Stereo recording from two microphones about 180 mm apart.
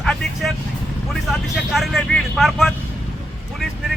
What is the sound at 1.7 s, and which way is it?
Speech, centre (ahead or behind).